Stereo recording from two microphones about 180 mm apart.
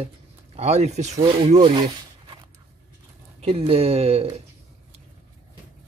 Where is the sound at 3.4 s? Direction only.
35° right (ahead or behind).